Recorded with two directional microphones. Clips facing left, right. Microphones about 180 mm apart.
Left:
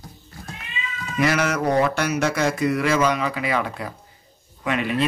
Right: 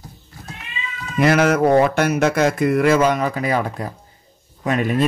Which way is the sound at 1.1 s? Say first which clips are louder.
Right 6 dB; 55° right (ahead or behind).